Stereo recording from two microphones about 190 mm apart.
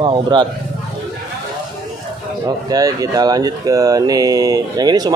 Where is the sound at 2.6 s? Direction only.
20° right (ahead or behind).